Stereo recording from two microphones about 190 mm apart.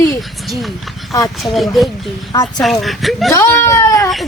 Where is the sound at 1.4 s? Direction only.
Centre (ahead or behind).